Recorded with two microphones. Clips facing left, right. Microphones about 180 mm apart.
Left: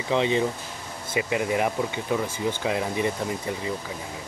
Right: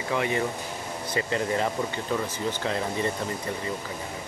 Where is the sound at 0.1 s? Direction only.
20° left (ahead or behind).